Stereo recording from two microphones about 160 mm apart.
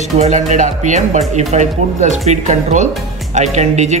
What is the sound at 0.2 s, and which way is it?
Speech, 45° right (ahead or behind).